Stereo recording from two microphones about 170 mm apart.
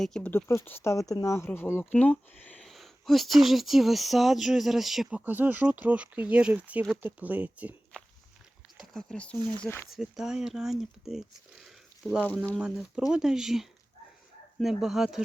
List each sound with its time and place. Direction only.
0.0 s speech: 5° left (ahead or behind); by 7.8 s 10° right (ahead or behind)
8.8 s speech: centre (ahead or behind)
9.4 s speech: 25° right (ahead or behind)
9.9 s speech: 5° right (ahead or behind)